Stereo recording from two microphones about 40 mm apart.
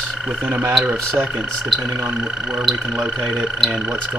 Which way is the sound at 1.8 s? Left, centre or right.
Centre.